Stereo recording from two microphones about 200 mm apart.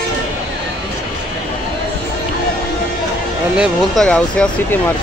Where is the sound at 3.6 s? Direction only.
5° left (ahead or behind).